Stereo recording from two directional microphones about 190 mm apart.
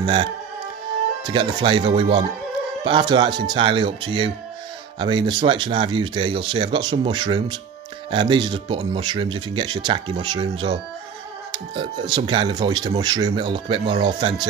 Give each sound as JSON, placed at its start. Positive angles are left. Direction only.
{"t": 0.0, "sound": "speech", "side_deg": -25}